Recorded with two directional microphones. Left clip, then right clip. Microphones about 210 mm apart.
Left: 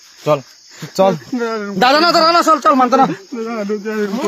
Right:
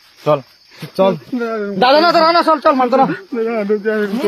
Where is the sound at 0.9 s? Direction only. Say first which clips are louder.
Left 1 dB; 35° left (ahead or behind).